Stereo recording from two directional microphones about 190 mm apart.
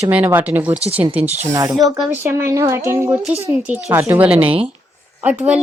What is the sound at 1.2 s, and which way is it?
Speech, 35° right (ahead or behind).